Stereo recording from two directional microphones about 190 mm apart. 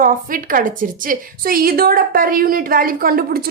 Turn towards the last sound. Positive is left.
turn(degrees=-50)  # may be behind; listen again after turning